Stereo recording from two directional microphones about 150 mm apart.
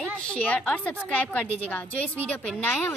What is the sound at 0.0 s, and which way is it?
A woman's voice, 5° left (ahead or behind).